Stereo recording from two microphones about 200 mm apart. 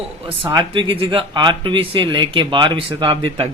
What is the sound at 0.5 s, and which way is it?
A man's voice, 25° right (ahead or behind).